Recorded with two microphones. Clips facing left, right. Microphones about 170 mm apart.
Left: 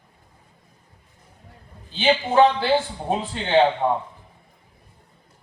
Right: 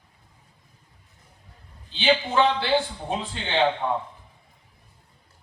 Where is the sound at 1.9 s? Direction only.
45° left (ahead or behind).